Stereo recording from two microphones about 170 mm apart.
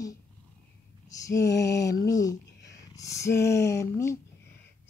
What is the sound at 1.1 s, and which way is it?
Lullaby, 20° left (ahead or behind).